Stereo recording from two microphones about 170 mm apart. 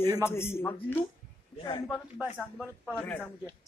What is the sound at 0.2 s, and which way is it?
Speech, 15° left (ahead or behind).